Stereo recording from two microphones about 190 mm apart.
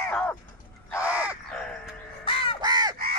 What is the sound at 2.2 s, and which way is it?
Crow, 30° left (ahead or behind).